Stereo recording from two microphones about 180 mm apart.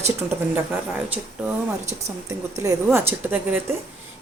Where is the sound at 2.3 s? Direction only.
15° right (ahead or behind).